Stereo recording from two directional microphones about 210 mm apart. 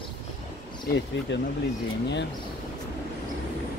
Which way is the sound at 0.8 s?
55° left (ahead or behind).